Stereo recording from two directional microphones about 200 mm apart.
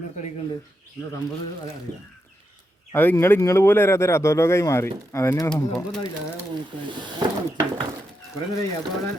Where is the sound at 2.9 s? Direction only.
10° left (ahead or behind).